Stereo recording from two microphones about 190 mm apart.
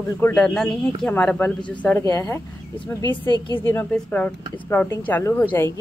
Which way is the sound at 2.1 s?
20° left (ahead or behind).